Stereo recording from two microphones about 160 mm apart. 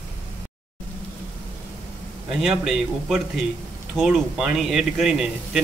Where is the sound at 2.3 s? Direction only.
5° right (ahead or behind).